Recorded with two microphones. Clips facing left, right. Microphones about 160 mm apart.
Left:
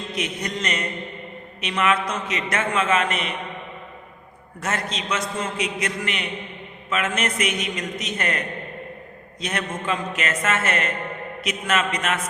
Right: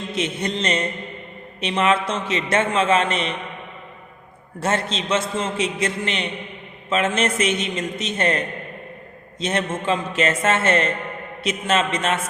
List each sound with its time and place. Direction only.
0.1 s a man's voice: 25° right (ahead or behind)
4.6 s a man's voice: 30° right (ahead or behind)